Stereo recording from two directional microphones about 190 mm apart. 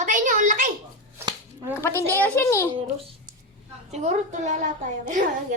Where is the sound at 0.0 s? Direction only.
40° right (ahead or behind).